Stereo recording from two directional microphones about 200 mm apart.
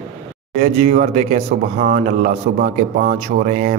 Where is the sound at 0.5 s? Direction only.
40° right (ahead or behind).